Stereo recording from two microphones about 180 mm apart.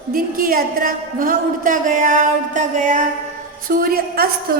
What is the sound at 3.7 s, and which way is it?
Speech, 55° right (ahead or behind).